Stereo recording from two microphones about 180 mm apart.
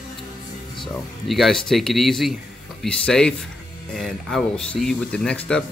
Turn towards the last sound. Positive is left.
turn(degrees=5)  # may be behind; listen again after turning